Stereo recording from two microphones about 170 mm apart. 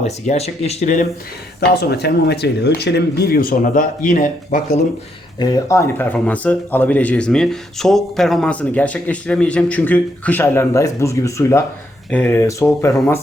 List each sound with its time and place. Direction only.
0.0 s speech: 40° left (ahead or behind)
1.7 s speech: 75° left (ahead or behind); by 4.8 s 50° left (ahead or behind)
5.4 s speech: 20° left (ahead or behind)